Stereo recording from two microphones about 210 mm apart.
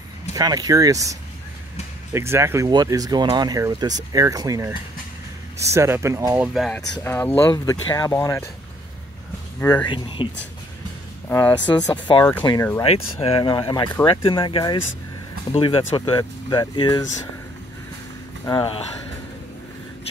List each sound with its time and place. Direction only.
0.3 s speech: 15° right (ahead or behind)
2.1 s speech: 10° right (ahead or behind)
7.0 s speech: 10° left (ahead or behind)
9.6 s speech: 10° left (ahead or behind)
9.8 s speech: 20° left (ahead or behind)
11.2 s speech: 10° left (ahead or behind)
12.8 s speech: 30° left (ahead or behind)
18.4 s speech: 20° left (ahead or behind)